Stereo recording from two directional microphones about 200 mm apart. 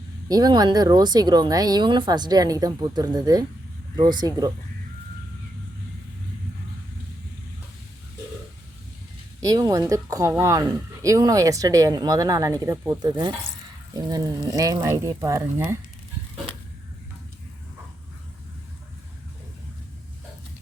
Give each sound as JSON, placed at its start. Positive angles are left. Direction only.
{"t": 0.3, "sound": "speech", "side_deg": -20}
{"t": 9.4, "sound": "speech", "side_deg": -15}